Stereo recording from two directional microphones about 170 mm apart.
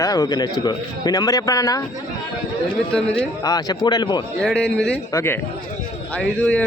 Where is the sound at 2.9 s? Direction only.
5° left (ahead or behind).